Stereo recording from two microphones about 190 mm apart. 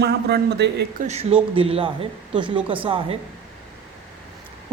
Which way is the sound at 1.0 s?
35° right (ahead or behind).